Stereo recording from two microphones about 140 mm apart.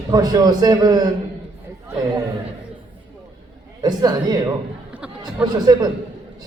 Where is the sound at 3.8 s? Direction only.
30° right (ahead or behind).